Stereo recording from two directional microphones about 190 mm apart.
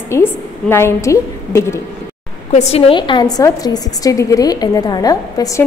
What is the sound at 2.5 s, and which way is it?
A woman's voice, 35° left (ahead or behind).